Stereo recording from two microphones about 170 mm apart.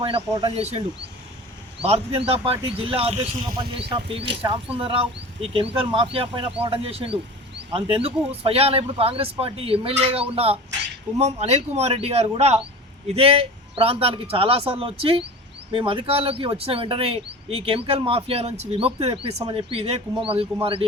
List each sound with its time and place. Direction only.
0.5 s speech: 35° right (ahead or behind)